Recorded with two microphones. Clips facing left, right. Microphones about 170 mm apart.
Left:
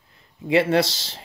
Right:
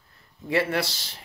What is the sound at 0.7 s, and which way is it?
Speech, 90° left.